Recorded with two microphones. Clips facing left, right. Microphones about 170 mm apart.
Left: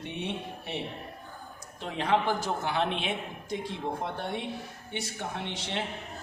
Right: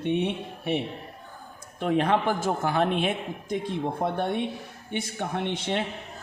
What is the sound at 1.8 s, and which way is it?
A man's voice, 55° right (ahead or behind).